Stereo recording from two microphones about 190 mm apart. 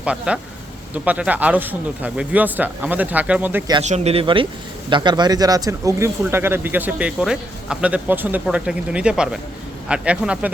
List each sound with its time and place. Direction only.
0.0 s speech: 5° right (ahead or behind)
3.8 s speech: 35° right (ahead or behind); by 10.5 s 5° right (ahead or behind)